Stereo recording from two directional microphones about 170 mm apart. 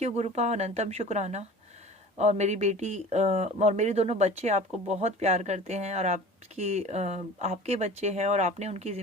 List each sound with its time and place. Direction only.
0.0 s speech: 40° right (ahead or behind)